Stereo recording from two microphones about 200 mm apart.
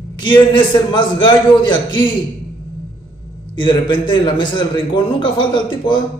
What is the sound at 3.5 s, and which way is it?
A man's voice, 25° left (ahead or behind).